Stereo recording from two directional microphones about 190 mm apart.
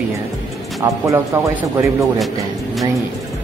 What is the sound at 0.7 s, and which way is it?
Speech, 15° right (ahead or behind).